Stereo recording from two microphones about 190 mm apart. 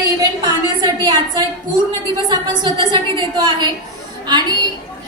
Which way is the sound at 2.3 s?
25° right (ahead or behind).